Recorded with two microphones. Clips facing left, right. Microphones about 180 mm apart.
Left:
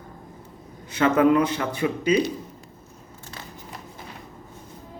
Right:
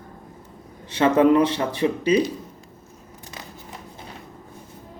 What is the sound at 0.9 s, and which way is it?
Speech, 30° right (ahead or behind).